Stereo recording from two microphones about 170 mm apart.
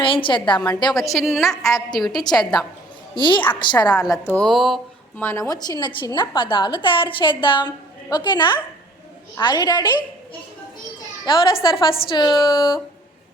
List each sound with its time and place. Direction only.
0.0 s a woman's voice: 30° left (ahead or behind)
1.1 s a woman's voice: centre (ahead or behind)
2.2 s a woman's voice: 25° left (ahead or behind)
4.4 s speech: centre (ahead or behind)
5.2 s a woman's voice: 15° left (ahead or behind)
11.3 s a woman's voice: 30° left (ahead or behind)